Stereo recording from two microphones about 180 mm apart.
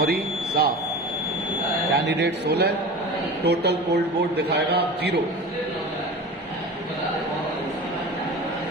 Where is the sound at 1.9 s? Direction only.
70° right (ahead or behind).